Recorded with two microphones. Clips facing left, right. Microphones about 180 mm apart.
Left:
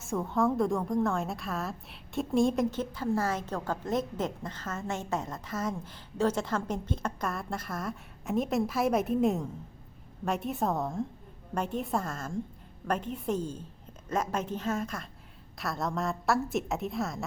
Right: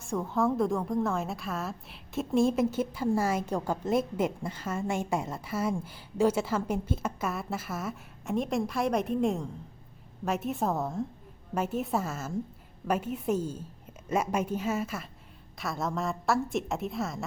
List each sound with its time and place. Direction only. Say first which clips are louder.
0.0 s a woman's voice: even; centre (ahead or behind)